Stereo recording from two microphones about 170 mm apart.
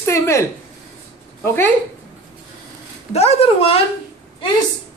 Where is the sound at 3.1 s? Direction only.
35° left (ahead or behind).